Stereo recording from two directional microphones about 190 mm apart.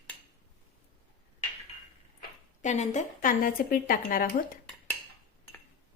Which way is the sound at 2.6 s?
40° left (ahead or behind).